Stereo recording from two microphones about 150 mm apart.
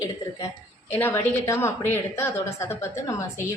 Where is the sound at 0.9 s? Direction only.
15° left (ahead or behind).